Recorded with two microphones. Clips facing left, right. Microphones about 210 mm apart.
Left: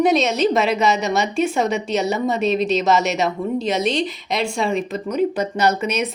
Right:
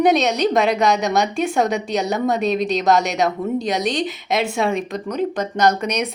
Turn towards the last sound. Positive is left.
turn(degrees=5)  # may be behind; listen again after turning